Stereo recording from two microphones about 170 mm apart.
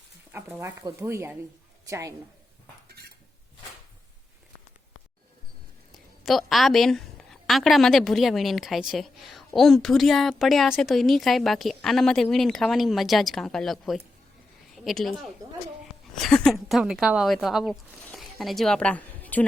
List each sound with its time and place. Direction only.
0.3 s a woman's voice: 10° right (ahead or behind)
6.2 s speech: centre (ahead or behind)